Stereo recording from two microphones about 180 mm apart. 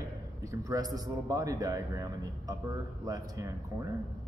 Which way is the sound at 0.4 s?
20° right (ahead or behind).